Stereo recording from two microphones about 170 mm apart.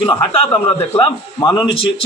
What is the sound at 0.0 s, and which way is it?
A man's voice, 30° left (ahead or behind).